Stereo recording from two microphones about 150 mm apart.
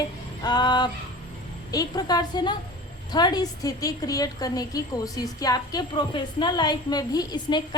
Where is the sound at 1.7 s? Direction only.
25° left (ahead or behind).